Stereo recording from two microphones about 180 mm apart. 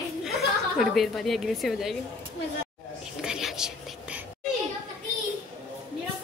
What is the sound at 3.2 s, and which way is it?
Whispering, 5° right (ahead or behind).